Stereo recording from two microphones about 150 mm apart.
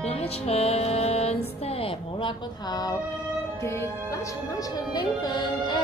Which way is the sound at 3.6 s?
20° left (ahead or behind).